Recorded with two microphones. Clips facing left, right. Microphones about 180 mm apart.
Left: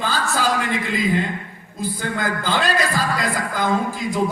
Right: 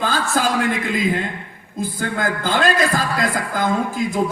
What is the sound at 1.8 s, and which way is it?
A man's voice, 50° right (ahead or behind).